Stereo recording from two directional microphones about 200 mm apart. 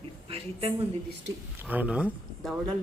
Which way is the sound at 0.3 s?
30° right (ahead or behind).